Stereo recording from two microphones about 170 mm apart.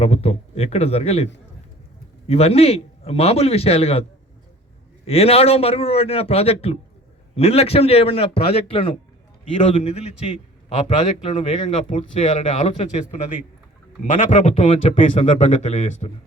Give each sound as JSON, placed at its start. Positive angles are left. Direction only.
{"t": 0.0, "sound": "a man's voice", "side_deg": 40}
{"t": 5.0, "sound": "a man's voice", "side_deg": 35}
{"t": 14.1, "sound": "a man's voice", "side_deg": 45}
{"t": 14.7, "sound": "a man's voice", "side_deg": 35}